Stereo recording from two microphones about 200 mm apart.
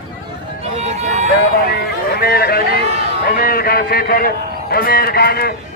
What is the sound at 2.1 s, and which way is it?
A man's voice, 50° left (ahead or behind).